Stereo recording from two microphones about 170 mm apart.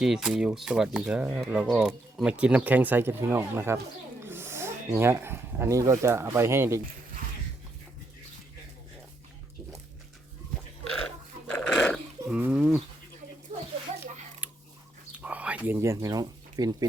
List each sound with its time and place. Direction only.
0.0 s speech: 5° right (ahead or behind)
11.4 s dog: 5° left (ahead or behind)
12.3 s speech: 5° right (ahead or behind)
14.4 s a sound: 10° right (ahead or behind)
15.1 s speech: 10° right (ahead or behind)